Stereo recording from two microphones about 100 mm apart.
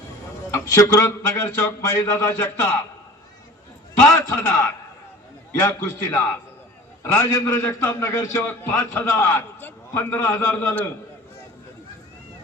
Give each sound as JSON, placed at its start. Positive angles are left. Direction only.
{"t": 0.5, "sound": "a man's voice", "side_deg": 30}
{"t": 4.0, "sound": "a man's voice", "side_deg": 25}